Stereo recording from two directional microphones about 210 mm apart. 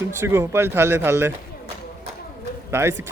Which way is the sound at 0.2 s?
10° right (ahead or behind).